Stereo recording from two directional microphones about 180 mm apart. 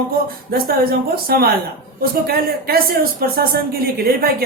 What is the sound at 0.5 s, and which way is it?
Speech, 55° right (ahead or behind).